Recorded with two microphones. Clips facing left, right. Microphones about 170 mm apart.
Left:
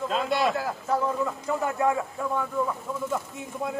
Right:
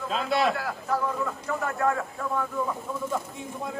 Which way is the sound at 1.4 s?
15° left (ahead or behind).